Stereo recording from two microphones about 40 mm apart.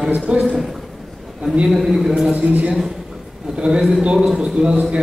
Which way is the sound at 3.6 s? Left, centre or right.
Right.